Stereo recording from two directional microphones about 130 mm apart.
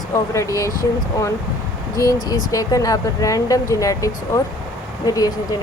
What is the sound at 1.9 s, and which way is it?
A woman's voice, 25° left (ahead or behind).